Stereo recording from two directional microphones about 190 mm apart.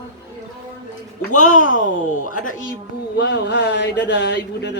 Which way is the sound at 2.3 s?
45° left (ahead or behind).